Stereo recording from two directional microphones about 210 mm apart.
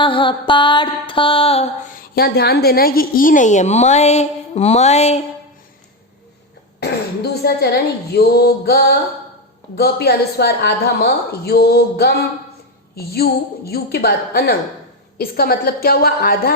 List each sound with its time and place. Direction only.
0.0 s mantra: 25° left (ahead or behind)
2.1 s a woman's voice: 50° left (ahead or behind); by 5.2 s 30° left (ahead or behind)
6.7 s a woman's voice: 50° left (ahead or behind)